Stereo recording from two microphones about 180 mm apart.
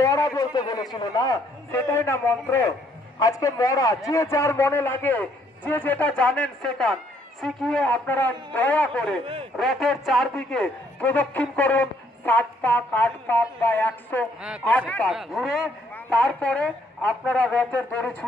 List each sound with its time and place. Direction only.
0.0 s a man's voice: 20° left (ahead or behind)
9.2 s speech: 30° right (ahead or behind)
9.6 s a man's voice: centre (ahead or behind)